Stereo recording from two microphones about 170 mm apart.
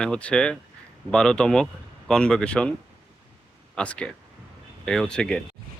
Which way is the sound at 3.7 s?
5° left (ahead or behind).